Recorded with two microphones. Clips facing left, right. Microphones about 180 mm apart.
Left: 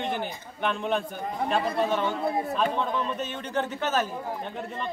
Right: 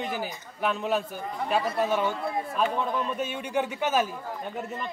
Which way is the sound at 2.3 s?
25° left (ahead or behind).